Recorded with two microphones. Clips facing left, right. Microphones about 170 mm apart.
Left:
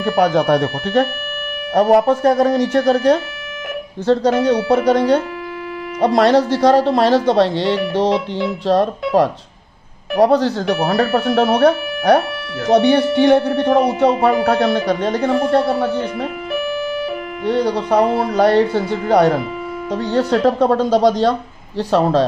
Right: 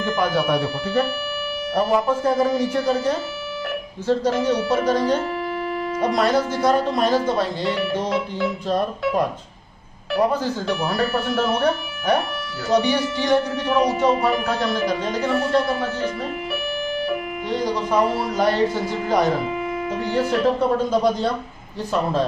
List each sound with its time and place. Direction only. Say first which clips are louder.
0.0 s speech: left 6 dB; 70° left (ahead or behind)
12.6 s speech: left 7 dB; 60° left (ahead or behind)
17.5 s speech: left 6 dB; 65° left (ahead or behind); by 22.2 s 80° left